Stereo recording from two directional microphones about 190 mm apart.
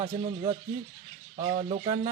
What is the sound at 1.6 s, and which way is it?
Frying, 25° right (ahead or behind).